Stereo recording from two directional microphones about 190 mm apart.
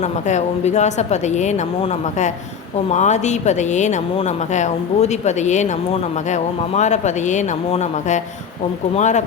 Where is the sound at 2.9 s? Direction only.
40° left (ahead or behind).